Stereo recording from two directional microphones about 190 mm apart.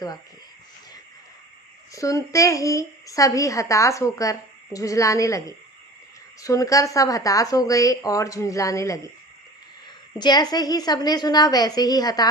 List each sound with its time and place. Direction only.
1.9 s a woman's voice: 15° left (ahead or behind)
10.2 s a woman's voice: 20° left (ahead or behind)